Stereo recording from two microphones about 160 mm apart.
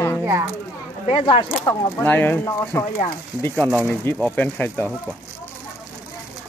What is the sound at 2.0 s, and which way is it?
Speech, 15° left (ahead or behind).